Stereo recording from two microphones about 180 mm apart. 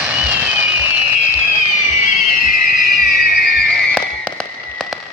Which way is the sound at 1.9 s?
40° left (ahead or behind).